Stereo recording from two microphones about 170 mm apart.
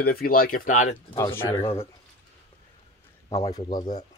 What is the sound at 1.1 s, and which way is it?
Speech, 15° left (ahead or behind).